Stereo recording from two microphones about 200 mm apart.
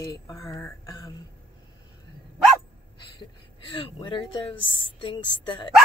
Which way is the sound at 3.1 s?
25° left (ahead or behind).